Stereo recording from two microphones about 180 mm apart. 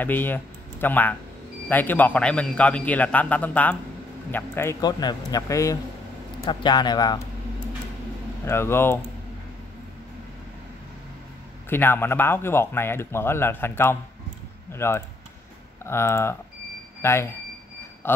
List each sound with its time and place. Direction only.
0.0 s a man's voice: 10° left (ahead or behind)
8.5 s speech: 15° left (ahead or behind)
11.7 s a man's voice: 10° left (ahead or behind)